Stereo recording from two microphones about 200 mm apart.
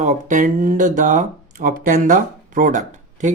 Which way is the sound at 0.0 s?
35° right (ahead or behind).